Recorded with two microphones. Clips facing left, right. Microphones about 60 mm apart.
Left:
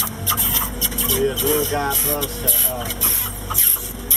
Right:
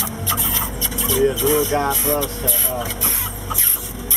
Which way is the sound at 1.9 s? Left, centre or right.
Right.